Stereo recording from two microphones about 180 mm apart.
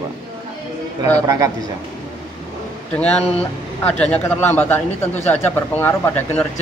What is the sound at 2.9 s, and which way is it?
Speech, 5° left (ahead or behind).